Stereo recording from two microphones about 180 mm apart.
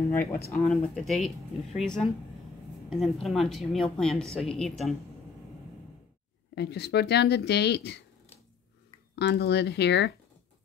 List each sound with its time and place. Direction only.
0.1 s speech: 10° left (ahead or behind)
0.7 s a woman's voice: centre (ahead or behind)
6.5 s speech: 65° left (ahead or behind)
9.1 s speech: 70° left (ahead or behind)